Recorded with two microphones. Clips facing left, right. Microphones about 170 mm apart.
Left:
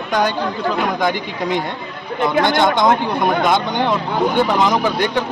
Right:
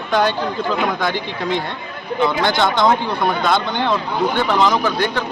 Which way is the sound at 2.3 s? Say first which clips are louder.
Left 3 dB; 50° left (ahead or behind).